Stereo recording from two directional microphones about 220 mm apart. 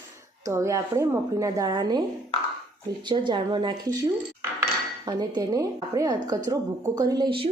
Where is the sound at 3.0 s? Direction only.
20° right (ahead or behind).